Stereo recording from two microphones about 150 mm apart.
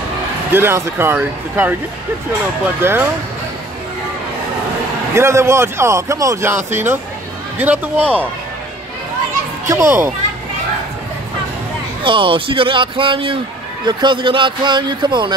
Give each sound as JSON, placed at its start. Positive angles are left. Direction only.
{"t": 0.5, "sound": "speech", "side_deg": -15}
{"t": 5.1, "sound": "speech", "side_deg": -20}
{"t": 9.7, "sound": "speech", "side_deg": -20}
{"t": 12.0, "sound": "speech", "side_deg": -35}